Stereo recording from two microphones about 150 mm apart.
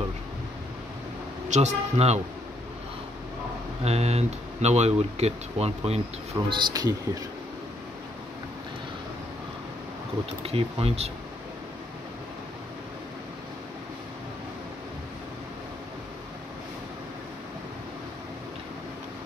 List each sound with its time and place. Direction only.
1.5 s speech: 50° right (ahead or behind)
3.8 s speech: 45° right (ahead or behind)
6.3 s speech: 25° right (ahead or behind)
10.4 s speech: 40° right (ahead or behind)